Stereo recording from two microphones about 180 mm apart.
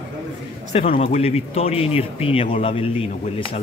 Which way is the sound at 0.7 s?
35° left (ahead or behind).